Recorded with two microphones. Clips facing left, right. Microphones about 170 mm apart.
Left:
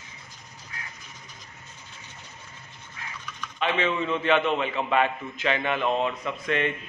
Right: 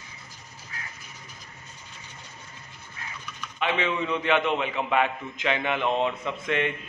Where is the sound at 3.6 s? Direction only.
15° right (ahead or behind).